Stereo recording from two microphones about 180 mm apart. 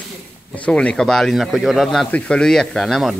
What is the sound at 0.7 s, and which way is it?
Speech, 5° left (ahead or behind).